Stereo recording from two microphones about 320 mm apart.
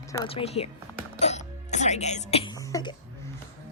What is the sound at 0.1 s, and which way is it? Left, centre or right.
Speech, centre.